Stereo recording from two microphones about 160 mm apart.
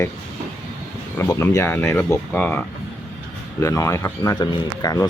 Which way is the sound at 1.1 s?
20° left (ahead or behind).